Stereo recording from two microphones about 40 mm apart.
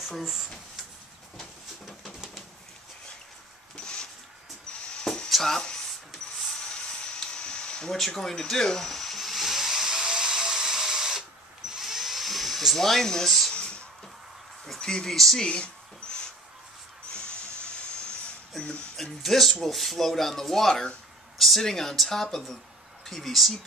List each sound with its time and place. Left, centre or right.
0.0 s speech: centre
1.9 s bird: centre
3.7 s a sound: left
5.3 s speech: centre
6.7 s a sound: left
7.9 s drill: centre
11.7 s dental drill: centre
13.5 s a sound: left
14.8 s speech: centre
15.1 s speech: centre
15.4 s speech: left
18.6 s speech: left
19.2 s speech: centre